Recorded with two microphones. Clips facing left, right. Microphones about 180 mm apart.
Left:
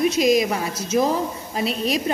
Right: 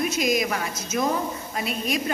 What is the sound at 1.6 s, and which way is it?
Speech, 30° left (ahead or behind).